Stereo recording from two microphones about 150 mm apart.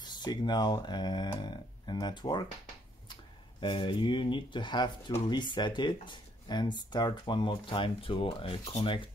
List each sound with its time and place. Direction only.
0.0 s speech: 30° left (ahead or behind)
3.6 s speech: 35° left (ahead or behind)